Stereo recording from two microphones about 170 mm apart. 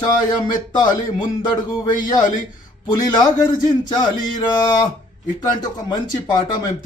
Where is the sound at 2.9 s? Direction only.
25° left (ahead or behind).